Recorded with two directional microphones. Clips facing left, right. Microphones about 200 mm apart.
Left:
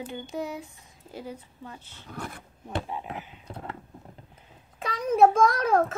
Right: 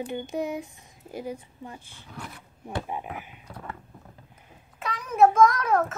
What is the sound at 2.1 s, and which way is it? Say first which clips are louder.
Speech: left 3 dB; 45° left (ahead or behind).